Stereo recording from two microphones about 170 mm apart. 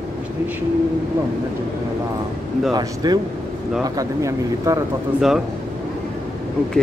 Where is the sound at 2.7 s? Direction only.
20° right (ahead or behind).